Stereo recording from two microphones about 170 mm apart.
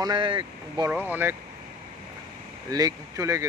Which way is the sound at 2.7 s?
20° right (ahead or behind).